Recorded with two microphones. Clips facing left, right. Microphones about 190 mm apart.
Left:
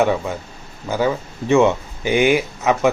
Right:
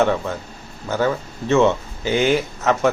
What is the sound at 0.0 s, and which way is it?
Speech, 10° left (ahead or behind).